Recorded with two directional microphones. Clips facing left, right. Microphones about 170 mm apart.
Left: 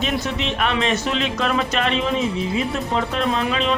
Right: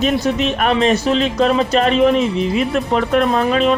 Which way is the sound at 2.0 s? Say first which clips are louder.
Right 8 dB; 65° right (ahead or behind).